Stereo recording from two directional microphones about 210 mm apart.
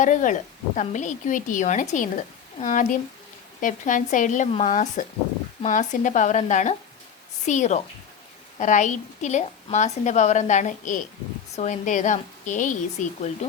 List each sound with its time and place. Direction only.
0.0 s a woman's voice: 35° left (ahead or behind)